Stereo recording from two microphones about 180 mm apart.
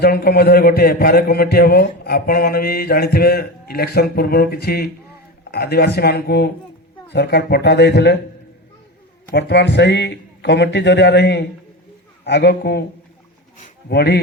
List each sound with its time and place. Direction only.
0.0 s a man's voice: 60° left (ahead or behind)
9.3 s a man's voice: 70° left (ahead or behind)